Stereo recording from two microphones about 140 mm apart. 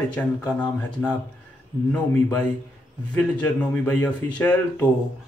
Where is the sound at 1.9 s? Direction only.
15° left (ahead or behind).